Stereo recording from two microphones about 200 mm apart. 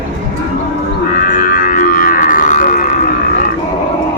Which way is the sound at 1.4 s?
45° left (ahead or behind).